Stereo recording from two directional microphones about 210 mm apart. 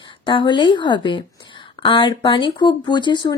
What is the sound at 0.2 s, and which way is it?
Speech, 25° left (ahead or behind).